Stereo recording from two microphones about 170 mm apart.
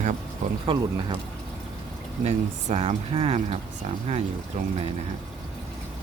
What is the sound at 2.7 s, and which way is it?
Speech, 35° right (ahead or behind).